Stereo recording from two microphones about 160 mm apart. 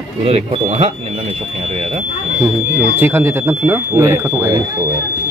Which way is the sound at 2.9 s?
10° right (ahead or behind).